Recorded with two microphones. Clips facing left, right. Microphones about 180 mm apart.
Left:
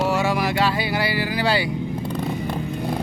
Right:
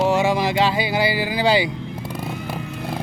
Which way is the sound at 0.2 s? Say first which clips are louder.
Right 2 dB; 20° right (ahead or behind).